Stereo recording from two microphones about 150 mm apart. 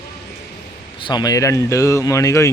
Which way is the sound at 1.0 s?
25° left (ahead or behind).